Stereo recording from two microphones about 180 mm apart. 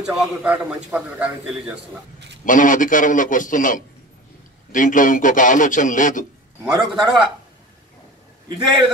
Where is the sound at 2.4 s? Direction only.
45° left (ahead or behind).